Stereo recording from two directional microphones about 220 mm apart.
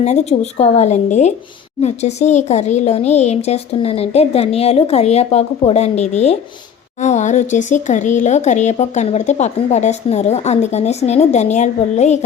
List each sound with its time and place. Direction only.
0.0 s speech: 30° left (ahead or behind)